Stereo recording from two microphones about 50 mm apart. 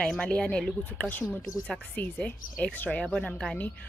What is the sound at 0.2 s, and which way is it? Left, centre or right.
Speech, left.